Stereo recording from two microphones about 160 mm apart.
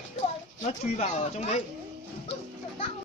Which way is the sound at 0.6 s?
45° left (ahead or behind).